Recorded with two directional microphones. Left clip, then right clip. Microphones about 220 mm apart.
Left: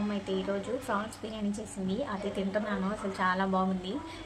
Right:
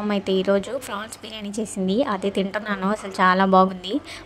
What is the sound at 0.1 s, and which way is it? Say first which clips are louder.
A woman's voice: right 15 dB; 50° right (ahead or behind).